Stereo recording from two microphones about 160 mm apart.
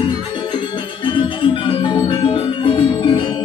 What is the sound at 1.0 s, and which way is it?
Music, 30° left (ahead or behind).